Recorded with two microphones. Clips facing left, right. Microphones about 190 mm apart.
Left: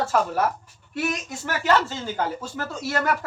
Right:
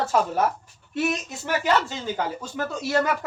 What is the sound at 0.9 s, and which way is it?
Speech, 20° right (ahead or behind).